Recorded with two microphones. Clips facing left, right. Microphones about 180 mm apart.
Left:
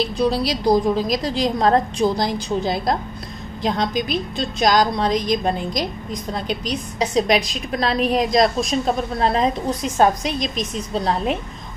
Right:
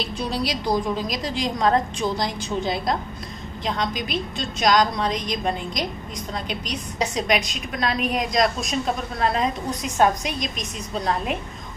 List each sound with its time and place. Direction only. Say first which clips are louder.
0.3 s a woman's voice: left 2 dB; 40° left (ahead or behind)
7.2 s a woman's voice: left 7 dB; 35° left (ahead or behind)